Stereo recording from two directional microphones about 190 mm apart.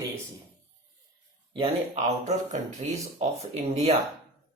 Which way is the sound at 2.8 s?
35° right (ahead or behind).